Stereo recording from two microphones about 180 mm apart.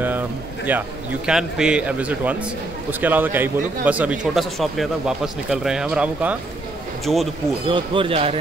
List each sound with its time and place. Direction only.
0.7 s a man's voice: 5° right (ahead or behind)
7.6 s speech: 30° right (ahead or behind)